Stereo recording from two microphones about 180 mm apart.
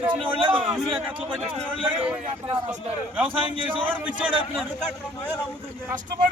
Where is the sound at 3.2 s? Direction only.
30° right (ahead or behind).